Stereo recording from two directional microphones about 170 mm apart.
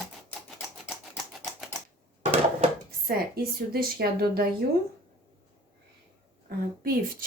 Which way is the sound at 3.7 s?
65° right (ahead or behind).